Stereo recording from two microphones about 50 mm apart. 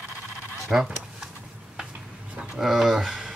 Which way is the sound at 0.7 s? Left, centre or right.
Centre.